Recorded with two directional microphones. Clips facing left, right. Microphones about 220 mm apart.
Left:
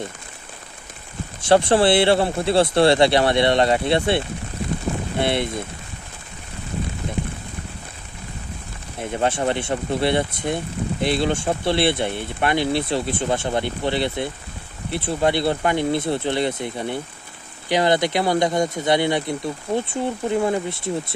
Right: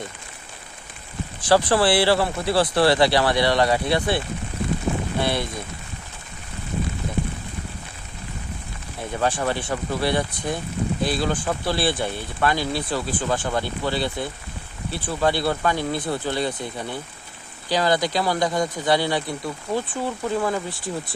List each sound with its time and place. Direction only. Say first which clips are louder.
1.4 s speech: left 3 dB; 25° left (ahead or behind)
5.2 s speech: left 4 dB; 25° left (ahead or behind)
9.0 s speech: left 2 dB; 25° left (ahead or behind)